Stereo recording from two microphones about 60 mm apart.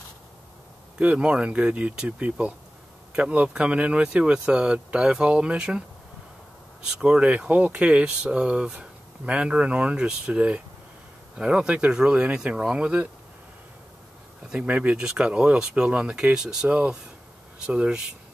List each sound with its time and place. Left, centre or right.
0.9 s speech: centre
6.9 s speech: centre
14.5 s speech: right